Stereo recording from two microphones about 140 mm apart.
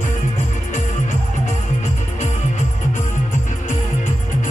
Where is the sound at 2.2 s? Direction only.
60° left (ahead or behind).